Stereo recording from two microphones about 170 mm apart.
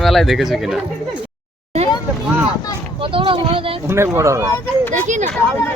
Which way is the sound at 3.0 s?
30° right (ahead or behind).